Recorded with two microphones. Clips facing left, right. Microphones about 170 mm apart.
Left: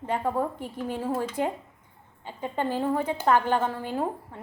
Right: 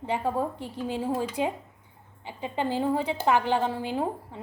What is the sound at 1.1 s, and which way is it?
A woman's voice, 15° right (ahead or behind).